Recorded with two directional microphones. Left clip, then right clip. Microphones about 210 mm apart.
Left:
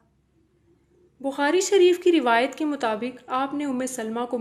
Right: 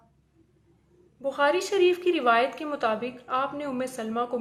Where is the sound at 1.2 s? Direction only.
40° left (ahead or behind).